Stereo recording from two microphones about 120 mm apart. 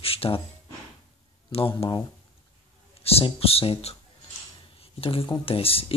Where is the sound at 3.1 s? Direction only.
55° left (ahead or behind).